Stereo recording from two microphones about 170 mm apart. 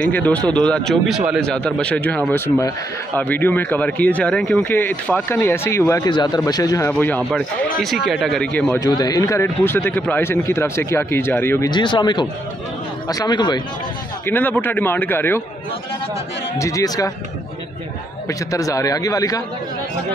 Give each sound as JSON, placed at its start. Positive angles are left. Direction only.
{"t": 0.0, "sound": "a man's voice", "side_deg": 10}
{"t": 6.9, "sound": "speech", "side_deg": 10}
{"t": 8.7, "sound": "speech", "side_deg": 20}
{"t": 11.7, "sound": "a man's voice", "side_deg": 25}
{"t": 14.2, "sound": "speech", "side_deg": 10}
{"t": 16.5, "sound": "a man's voice", "side_deg": 20}
{"t": 18.5, "sound": "a man's voice", "side_deg": 20}